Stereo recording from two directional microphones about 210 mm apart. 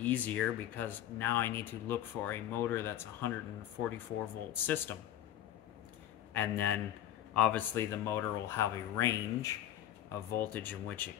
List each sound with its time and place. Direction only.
0.0 s speech: 5° left (ahead or behind)
4.5 s speech: 10° left (ahead or behind)
6.3 s speech: 10° left (ahead or behind)